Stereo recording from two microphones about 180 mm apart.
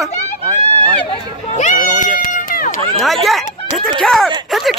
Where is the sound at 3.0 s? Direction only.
Centre (ahead or behind).